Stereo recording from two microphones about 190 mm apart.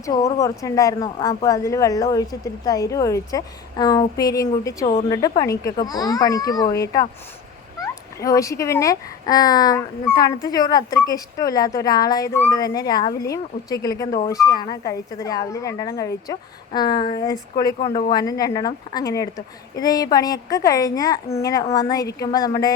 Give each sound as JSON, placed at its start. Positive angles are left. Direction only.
{"t": 0.0, "sound": "a child's voice", "side_deg": 15}
{"t": 17.8, "sound": "speech", "side_deg": 40}
{"t": 18.1, "sound": "a child's voice", "side_deg": 20}